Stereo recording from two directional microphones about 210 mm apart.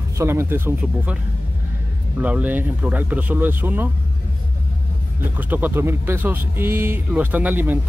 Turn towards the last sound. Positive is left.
turn(degrees=-10)  # may be behind; listen again after turning